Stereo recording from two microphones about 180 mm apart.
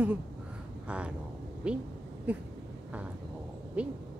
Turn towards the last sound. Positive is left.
turn(degrees=-5)  # may be behind; listen again after turning